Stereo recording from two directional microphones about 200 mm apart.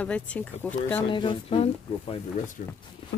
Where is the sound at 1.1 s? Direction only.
25° left (ahead or behind).